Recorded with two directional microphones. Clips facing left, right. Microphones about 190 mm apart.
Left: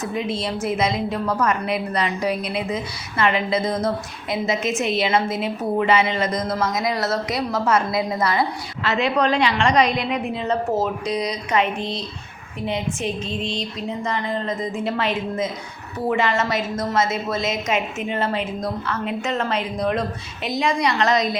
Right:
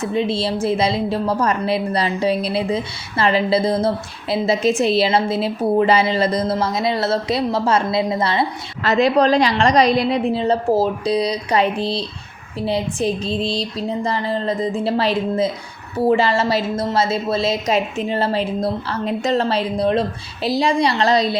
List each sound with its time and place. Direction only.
0.0 s a woman's voice: 30° right (ahead or behind)
8.8 s a woman's voice: 40° right (ahead or behind)